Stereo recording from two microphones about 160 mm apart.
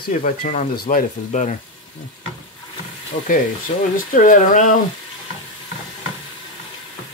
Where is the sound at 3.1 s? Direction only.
55° left (ahead or behind).